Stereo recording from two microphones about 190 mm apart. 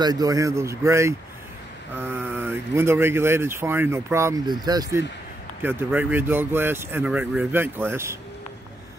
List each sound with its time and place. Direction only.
0.0 s speech: 20° right (ahead or behind)